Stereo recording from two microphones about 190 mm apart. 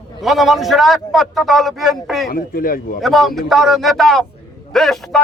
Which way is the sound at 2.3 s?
50° left (ahead or behind).